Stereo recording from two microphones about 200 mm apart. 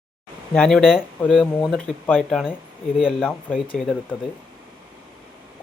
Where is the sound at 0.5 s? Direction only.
5° left (ahead or behind).